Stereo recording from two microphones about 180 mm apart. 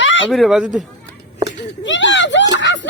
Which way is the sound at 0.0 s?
90° left.